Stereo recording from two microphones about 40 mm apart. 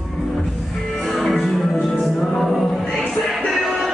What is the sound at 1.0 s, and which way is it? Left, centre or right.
Music, centre.